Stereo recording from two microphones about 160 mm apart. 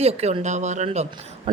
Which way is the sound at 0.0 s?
40° right (ahead or behind).